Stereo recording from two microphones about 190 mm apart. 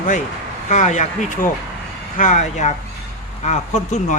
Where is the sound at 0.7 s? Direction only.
40° left (ahead or behind).